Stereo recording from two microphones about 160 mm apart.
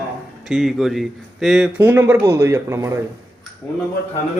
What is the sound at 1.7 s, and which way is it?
Speech, 10° right (ahead or behind).